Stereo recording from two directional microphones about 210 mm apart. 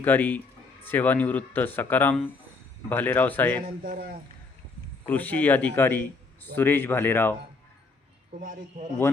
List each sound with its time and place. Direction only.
0.0 s a man's voice: 10° left (ahead or behind)
3.8 s speech: 40° right (ahead or behind)
5.0 s a man's voice: 10° left (ahead or behind)
8.3 s speech: 35° right (ahead or behind)